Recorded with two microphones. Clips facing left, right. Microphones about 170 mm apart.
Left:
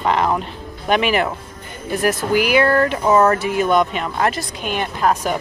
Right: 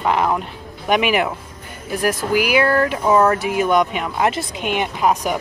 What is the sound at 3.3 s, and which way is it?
Speech, 10° right (ahead or behind).